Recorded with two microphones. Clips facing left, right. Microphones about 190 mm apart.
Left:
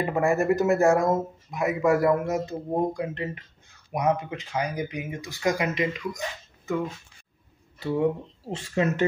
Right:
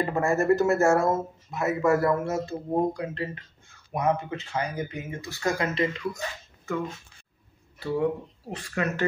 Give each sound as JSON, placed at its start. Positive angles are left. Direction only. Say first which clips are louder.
{"t": 0.1, "sound": "speech", "louder": "left 1 dB", "side_deg": 15}
{"t": 7.8, "sound": "speech", "louder": "left 2 dB", "side_deg": 25}